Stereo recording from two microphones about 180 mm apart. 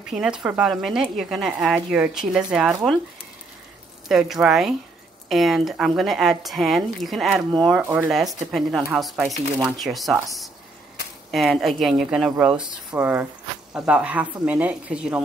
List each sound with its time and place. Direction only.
0.0 s speech: 5° right (ahead or behind)
4.1 s speech: centre (ahead or behind)
7.8 s speech: 10° right (ahead or behind)
11.3 s a woman's voice: centre (ahead or behind)